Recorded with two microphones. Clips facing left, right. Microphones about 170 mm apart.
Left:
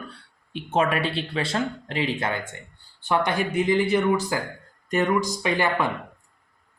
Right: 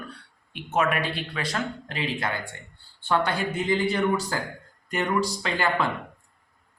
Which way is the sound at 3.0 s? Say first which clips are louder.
Left 1 dB; 15° left (ahead or behind).